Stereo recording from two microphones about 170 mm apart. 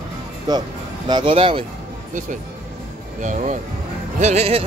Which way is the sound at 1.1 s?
30° right (ahead or behind).